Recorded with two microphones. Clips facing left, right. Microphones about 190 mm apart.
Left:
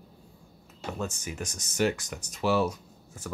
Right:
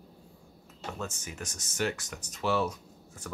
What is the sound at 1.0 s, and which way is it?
Speech, 10° left (ahead or behind).